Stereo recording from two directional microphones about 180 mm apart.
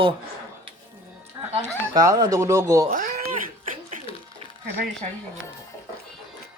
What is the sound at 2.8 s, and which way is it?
Cat, 45° right (ahead or behind).